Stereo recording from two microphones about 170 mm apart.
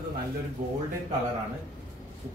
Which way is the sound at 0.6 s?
45° right (ahead or behind).